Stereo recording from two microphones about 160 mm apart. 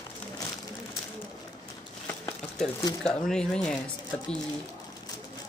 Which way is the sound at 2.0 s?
5° left (ahead or behind).